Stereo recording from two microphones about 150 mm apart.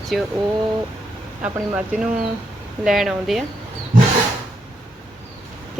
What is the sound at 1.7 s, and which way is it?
Speech, 5° right (ahead or behind).